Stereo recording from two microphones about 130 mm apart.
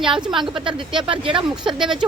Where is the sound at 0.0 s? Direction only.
40° right (ahead or behind).